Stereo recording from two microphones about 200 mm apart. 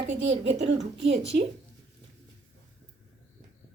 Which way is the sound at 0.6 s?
60° right (ahead or behind).